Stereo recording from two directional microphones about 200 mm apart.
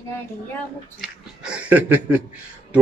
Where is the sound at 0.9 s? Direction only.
5° right (ahead or behind).